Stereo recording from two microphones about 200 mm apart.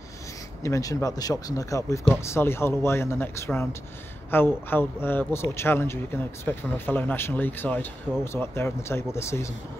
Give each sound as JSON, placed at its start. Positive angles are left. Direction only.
{"t": 0.6, "sound": "a man's voice", "side_deg": 15}